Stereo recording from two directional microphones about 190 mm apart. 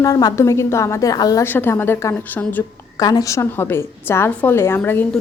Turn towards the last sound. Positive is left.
turn(degrees=10)  # may be behind; listen again after turning